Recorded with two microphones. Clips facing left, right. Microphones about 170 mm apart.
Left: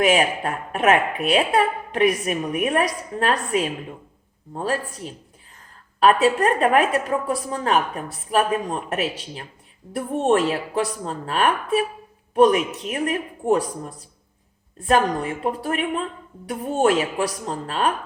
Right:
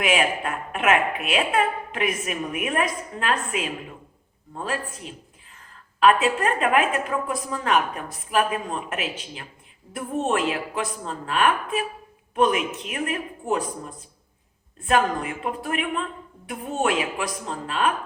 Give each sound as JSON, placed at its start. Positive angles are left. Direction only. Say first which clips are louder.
{"t": 0.0, "sound": "a woman's voice", "louder": "left 4 dB", "side_deg": 35}
{"t": 6.0, "sound": "a woman's voice", "louder": "left 2 dB", "side_deg": 35}
{"t": 14.8, "sound": "a woman's voice", "louder": "left 2 dB", "side_deg": 35}